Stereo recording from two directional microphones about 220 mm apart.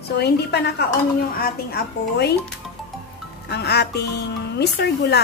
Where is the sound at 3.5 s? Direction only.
50° left (ahead or behind).